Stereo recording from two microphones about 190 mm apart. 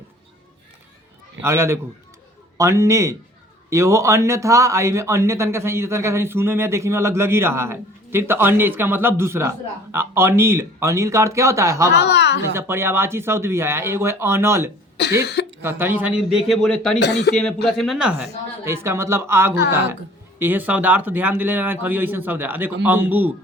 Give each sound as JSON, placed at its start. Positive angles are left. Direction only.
{"t": 1.4, "sound": "speech", "side_deg": -15}
{"t": 11.9, "sound": "a woman's voice", "side_deg": 60}
{"t": 12.5, "sound": "speech", "side_deg": -10}
{"t": 15.2, "sound": "speech", "side_deg": 60}
{"t": 15.6, "sound": "a man's voice", "side_deg": -10}
{"t": 17.0, "sound": "speech", "side_deg": 60}
{"t": 17.7, "sound": "a man's voice", "side_deg": 0}